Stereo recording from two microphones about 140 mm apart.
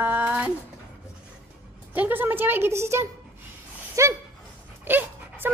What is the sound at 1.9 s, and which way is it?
A woman's voice, 15° right (ahead or behind).